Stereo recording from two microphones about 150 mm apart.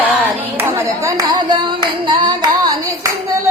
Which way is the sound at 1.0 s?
25° right (ahead or behind).